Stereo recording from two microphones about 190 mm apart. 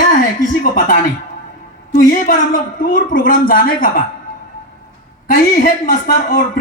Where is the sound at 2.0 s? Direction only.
45° left (ahead or behind).